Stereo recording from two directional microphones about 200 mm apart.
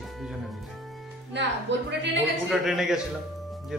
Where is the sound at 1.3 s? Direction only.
60° right (ahead or behind).